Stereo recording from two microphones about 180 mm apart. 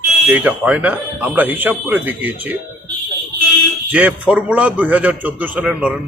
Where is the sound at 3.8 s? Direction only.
10° right (ahead or behind).